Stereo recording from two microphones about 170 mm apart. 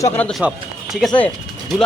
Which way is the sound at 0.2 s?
5° left (ahead or behind).